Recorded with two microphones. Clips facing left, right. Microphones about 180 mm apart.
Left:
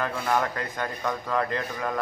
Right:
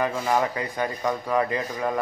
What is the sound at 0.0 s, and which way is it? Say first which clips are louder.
A man's voice: right 3 dB; 15° right (ahead or behind).